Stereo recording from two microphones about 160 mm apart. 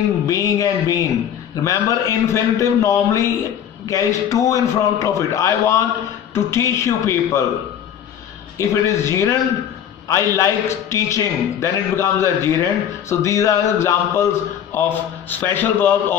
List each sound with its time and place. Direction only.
0.3 s a man's voice: 20° left (ahead or behind)
8.5 s a man's voice: 15° left (ahead or behind)